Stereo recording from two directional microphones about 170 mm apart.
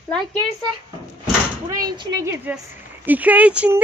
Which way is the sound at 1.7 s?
20° right (ahead or behind).